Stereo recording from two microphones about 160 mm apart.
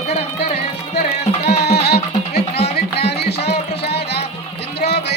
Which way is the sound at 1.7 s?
90° left.